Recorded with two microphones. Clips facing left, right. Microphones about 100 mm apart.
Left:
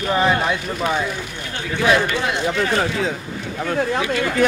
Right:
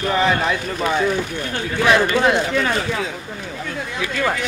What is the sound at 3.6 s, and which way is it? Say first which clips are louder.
Speech: left 10 dB; 45° left (ahead or behind).